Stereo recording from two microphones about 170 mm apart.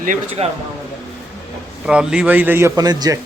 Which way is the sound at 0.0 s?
45° right (ahead or behind).